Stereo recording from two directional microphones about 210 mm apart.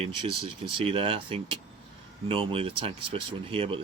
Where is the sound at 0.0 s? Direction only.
25° right (ahead or behind).